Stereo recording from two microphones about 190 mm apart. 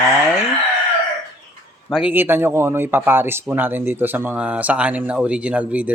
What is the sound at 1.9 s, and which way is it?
Speech, 5° right (ahead or behind).